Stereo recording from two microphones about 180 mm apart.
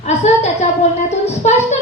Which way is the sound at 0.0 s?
40° left (ahead or behind).